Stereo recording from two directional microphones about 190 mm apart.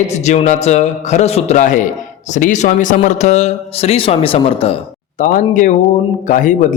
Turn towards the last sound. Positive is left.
turn(degrees=45)  # may be behind; listen again after turning